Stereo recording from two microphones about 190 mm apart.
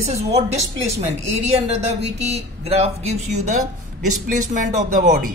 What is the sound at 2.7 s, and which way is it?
Speech, 35° right (ahead or behind).